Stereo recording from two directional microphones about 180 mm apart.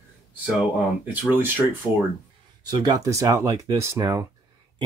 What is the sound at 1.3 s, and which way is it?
Speech, 10° right (ahead or behind).